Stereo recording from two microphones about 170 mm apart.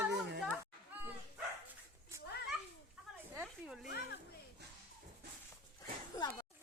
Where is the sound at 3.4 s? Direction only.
5° right (ahead or behind).